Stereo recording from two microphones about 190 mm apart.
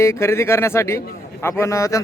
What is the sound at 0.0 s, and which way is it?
A man's voice, 15° left (ahead or behind).